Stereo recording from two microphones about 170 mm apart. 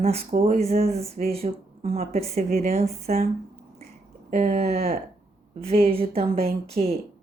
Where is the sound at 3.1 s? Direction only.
45° right (ahead or behind).